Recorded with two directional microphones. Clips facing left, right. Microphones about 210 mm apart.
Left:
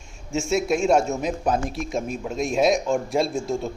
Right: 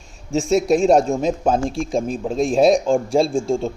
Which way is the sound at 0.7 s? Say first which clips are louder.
Right 5 dB; 35° right (ahead or behind).